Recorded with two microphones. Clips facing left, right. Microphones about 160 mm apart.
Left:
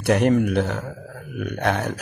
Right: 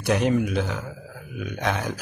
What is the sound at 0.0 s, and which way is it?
A man's voice, 65° left (ahead or behind).